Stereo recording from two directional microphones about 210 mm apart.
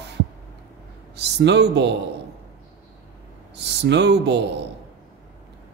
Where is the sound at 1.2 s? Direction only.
55° right (ahead or behind).